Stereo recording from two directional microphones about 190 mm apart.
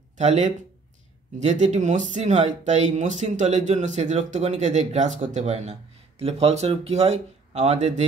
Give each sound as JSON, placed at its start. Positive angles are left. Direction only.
{"t": 0.2, "sound": "speech", "side_deg": -35}